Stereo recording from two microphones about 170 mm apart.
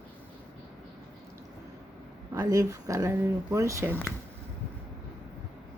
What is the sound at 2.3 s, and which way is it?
Speech, 20° right (ahead or behind).